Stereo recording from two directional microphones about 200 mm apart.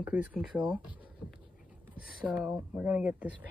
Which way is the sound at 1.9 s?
50° left (ahead or behind).